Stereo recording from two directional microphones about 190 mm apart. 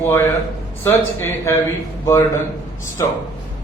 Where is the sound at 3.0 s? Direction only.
15° left (ahead or behind).